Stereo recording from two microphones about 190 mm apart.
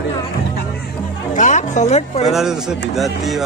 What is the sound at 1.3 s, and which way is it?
Speech, 40° left (ahead or behind).